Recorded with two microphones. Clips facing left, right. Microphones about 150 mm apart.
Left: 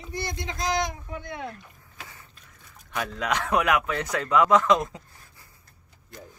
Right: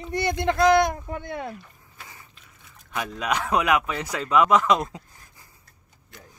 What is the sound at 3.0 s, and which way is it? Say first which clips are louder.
Speech: right 1 dB; 15° right (ahead or behind).